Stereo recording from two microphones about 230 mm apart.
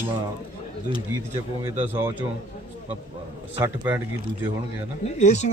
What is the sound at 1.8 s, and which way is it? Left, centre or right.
Speech, centre.